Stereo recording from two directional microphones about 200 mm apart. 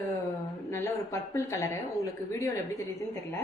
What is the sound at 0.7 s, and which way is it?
Speech, 15° left (ahead or behind).